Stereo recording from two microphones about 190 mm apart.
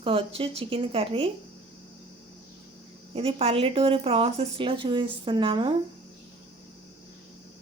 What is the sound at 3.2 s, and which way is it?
Speech, 30° right (ahead or behind).